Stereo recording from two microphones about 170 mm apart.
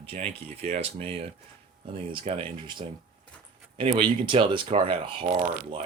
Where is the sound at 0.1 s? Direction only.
45° right (ahead or behind).